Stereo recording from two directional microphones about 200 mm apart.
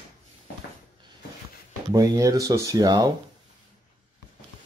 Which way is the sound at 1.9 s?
15° right (ahead or behind).